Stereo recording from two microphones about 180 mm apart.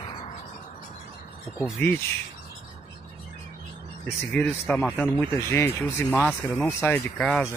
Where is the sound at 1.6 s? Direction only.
10° left (ahead or behind).